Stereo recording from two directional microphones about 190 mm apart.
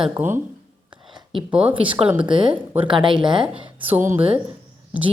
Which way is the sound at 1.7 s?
25° right (ahead or behind).